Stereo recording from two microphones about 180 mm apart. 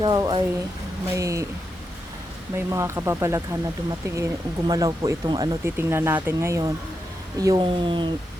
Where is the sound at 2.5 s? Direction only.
15° right (ahead or behind).